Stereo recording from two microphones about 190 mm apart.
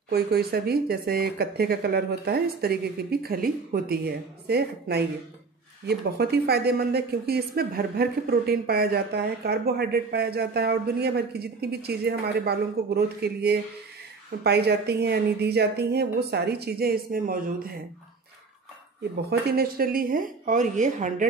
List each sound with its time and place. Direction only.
0.1 s speech: 55° right (ahead or behind)
19.3 s a woman's voice: 55° right (ahead or behind)